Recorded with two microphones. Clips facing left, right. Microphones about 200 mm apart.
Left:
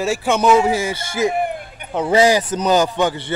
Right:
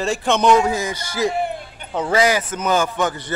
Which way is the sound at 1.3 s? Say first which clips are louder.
Left 2 dB; 50° left (ahead or behind).